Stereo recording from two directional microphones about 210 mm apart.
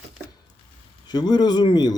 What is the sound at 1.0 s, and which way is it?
Speech, 20° left (ahead or behind).